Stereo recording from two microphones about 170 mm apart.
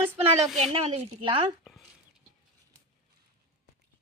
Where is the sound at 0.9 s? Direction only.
30° right (ahead or behind).